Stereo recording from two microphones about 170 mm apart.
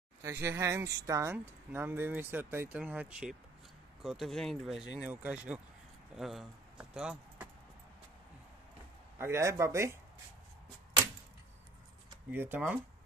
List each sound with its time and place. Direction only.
0.2 s speech: 15° right (ahead or behind)
9.2 s speech: 15° right (ahead or behind)
12.3 s speech: 10° right (ahead or behind)